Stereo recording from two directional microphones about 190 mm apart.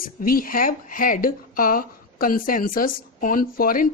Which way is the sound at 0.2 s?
50° left (ahead or behind).